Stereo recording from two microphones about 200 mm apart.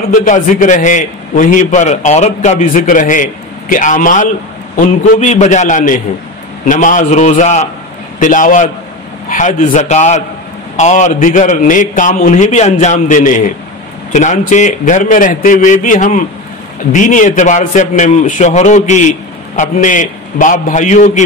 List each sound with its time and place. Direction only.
0.1 s a man's voice: 40° left (ahead or behind)